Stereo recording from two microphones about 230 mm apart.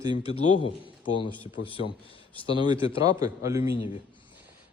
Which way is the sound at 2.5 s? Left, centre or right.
Centre.